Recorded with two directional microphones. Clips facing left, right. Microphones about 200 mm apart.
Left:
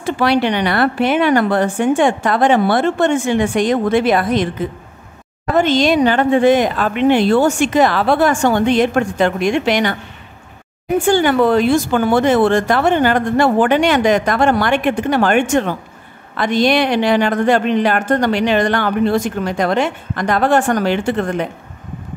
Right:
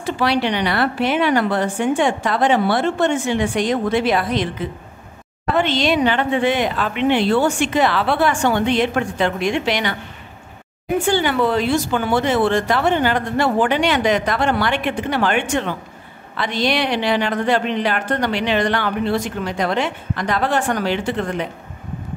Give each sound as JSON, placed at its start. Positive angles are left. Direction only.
{"t": 0.0, "sound": "speech", "side_deg": 50}
{"t": 11.1, "sound": "speech", "side_deg": 50}